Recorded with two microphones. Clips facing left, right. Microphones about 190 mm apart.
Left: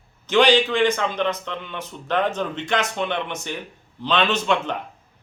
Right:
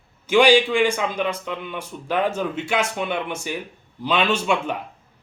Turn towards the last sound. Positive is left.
turn(degrees=-10)  # may be behind; listen again after turning